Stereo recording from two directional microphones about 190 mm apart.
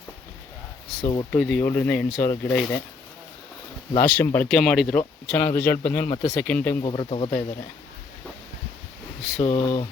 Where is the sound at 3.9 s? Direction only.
10° left (ahead or behind).